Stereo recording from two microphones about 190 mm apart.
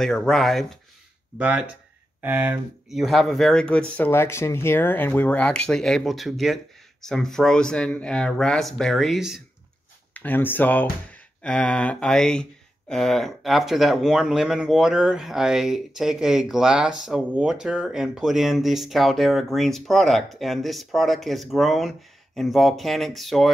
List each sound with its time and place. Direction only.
0.0 s speech: centre (ahead or behind)
10.1 s speech: 10° left (ahead or behind)